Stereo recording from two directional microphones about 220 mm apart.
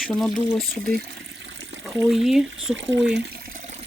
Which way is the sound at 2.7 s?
55° right (ahead or behind).